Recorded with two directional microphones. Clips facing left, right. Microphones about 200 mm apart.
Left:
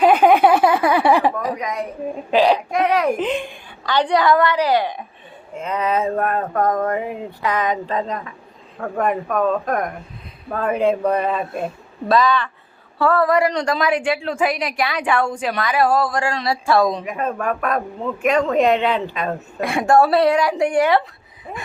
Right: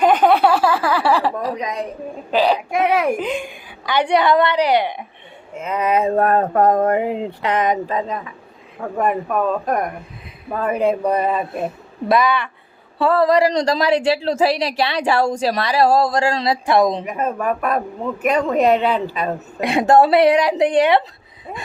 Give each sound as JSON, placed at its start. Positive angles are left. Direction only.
{"t": 0.0, "sound": "a sound", "side_deg": 10}
{"t": 1.5, "sound": "a sound", "side_deg": -25}
{"t": 2.5, "sound": "a woman's voice", "side_deg": -10}
{"t": 4.1, "sound": "a woman's voice", "side_deg": -25}
{"t": 5.5, "sound": "speech", "side_deg": -10}
{"t": 6.1, "sound": "a woman's voice", "side_deg": -40}
{"t": 13.2, "sound": "speech", "side_deg": -35}
{"t": 16.2, "sound": "a woman's voice", "side_deg": -25}
{"t": 17.3, "sound": "a woman's voice", "side_deg": -10}